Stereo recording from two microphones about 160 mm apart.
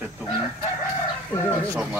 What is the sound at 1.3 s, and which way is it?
Speech, 15° left (ahead or behind).